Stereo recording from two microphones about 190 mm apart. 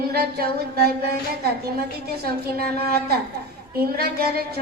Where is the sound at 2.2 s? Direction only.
55° right (ahead or behind).